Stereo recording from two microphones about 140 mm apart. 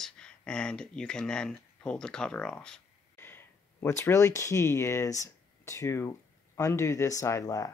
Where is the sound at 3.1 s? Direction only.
15° left (ahead or behind).